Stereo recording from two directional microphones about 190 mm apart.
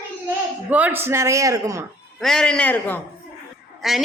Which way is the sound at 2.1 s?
5° left (ahead or behind).